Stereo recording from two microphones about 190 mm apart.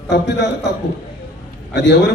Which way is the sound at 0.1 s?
65° left (ahead or behind).